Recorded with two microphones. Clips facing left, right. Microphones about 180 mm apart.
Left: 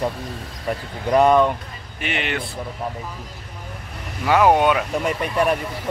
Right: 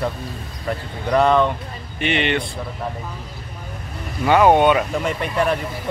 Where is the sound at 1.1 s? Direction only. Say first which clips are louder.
Left 1 dB; 10° left (ahead or behind).